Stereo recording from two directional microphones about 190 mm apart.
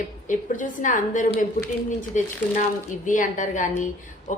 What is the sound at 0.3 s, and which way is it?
A woman's voice, 40° left (ahead or behind).